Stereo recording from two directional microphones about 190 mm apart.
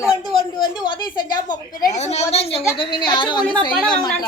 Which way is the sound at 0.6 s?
25° left (ahead or behind).